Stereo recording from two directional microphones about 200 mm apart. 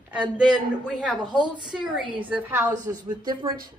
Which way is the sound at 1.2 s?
20° right (ahead or behind).